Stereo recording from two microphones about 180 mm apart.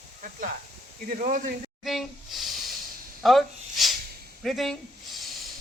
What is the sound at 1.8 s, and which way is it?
Speech, centre (ahead or behind).